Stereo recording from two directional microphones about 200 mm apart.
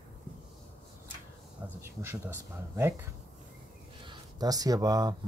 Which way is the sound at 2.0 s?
10° right (ahead or behind).